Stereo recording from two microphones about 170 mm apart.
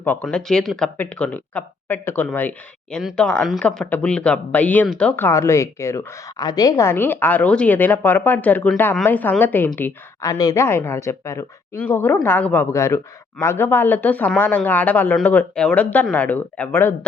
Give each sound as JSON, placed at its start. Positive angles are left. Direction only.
{"t": 0.0, "sound": "speech", "side_deg": 10}